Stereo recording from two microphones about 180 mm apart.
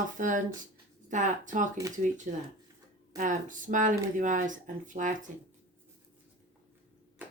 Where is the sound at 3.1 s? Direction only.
45° right (ahead or behind).